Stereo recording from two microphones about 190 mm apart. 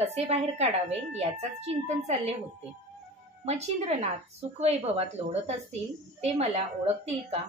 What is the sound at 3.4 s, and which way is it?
A woman's voice, 35° right (ahead or behind).